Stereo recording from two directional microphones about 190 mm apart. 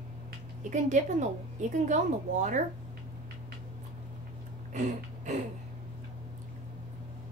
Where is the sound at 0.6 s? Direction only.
40° right (ahead or behind).